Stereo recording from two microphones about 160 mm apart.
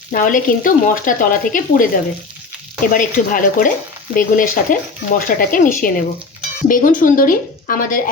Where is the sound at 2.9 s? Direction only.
60° left (ahead or behind).